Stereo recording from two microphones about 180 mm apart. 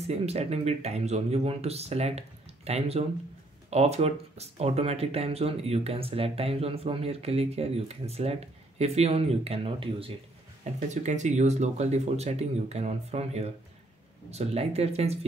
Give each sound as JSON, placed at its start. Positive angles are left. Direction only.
{"t": 0.0, "sound": "speech", "side_deg": -35}
{"t": 10.6, "sound": "speech", "side_deg": -40}